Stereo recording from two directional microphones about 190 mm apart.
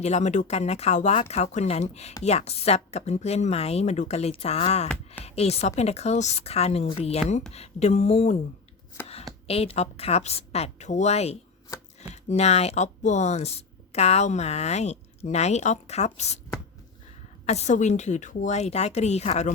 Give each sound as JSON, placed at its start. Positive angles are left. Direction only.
{"t": 0.0, "sound": "speech", "side_deg": 40}
{"t": 8.9, "sound": "a sound", "side_deg": 15}
{"t": 9.5, "sound": "speech", "side_deg": 30}
{"t": 17.4, "sound": "speech", "side_deg": 35}